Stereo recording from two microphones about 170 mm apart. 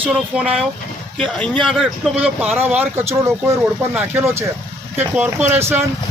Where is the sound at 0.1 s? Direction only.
5° right (ahead or behind).